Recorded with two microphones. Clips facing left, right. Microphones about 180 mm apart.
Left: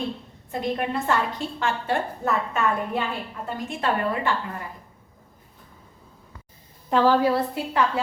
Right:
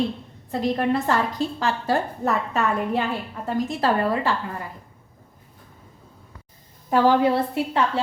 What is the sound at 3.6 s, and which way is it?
Speech, 35° right (ahead or behind).